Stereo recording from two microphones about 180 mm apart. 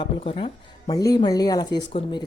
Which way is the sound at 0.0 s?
30° left (ahead or behind).